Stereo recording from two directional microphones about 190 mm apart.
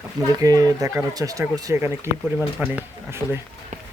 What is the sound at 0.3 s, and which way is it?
Speech, 20° right (ahead or behind).